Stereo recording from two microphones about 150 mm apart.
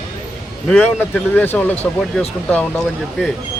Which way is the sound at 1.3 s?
10° left (ahead or behind).